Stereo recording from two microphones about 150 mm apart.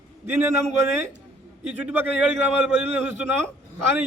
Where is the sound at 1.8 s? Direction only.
10° right (ahead or behind).